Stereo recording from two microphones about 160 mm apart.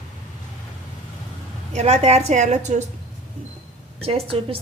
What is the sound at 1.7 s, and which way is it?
A woman's voice, 45° right (ahead or behind).